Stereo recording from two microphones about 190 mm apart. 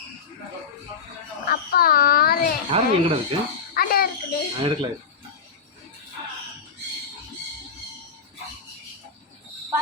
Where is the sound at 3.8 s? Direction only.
50° left (ahead or behind).